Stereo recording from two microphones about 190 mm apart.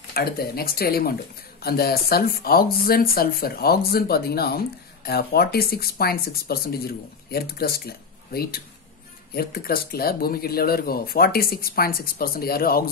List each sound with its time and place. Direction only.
0.1 s speech: 55° left (ahead or behind)